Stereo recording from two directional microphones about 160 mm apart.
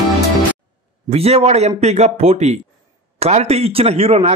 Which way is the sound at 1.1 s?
40° right (ahead or behind).